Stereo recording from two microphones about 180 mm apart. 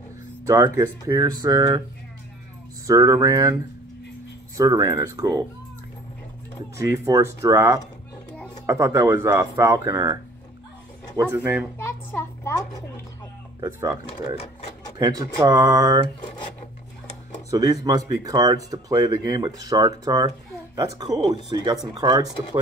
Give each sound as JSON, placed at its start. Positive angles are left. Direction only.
{"t": 0.5, "sound": "speech", "side_deg": -15}
{"t": 2.9, "sound": "speech", "side_deg": -20}
{"t": 4.6, "sound": "speech", "side_deg": -20}
{"t": 6.8, "sound": "speech", "side_deg": -20}
{"t": 11.1, "sound": "speech", "side_deg": -10}
{"t": 11.8, "sound": "a child's voice", "side_deg": 10}
{"t": 13.6, "sound": "speech", "side_deg": -20}
{"t": 15.0, "sound": "speech", "side_deg": -20}
{"t": 17.5, "sound": "speech", "side_deg": -20}